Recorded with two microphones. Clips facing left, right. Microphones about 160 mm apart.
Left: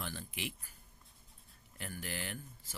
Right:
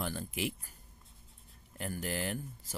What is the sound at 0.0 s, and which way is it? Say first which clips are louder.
Speech: right 7 dB; 40° right (ahead or behind).